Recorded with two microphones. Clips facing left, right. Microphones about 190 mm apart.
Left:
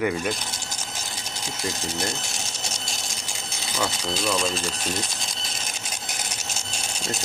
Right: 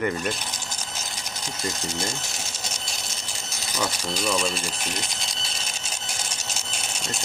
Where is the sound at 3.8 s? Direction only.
5° right (ahead or behind).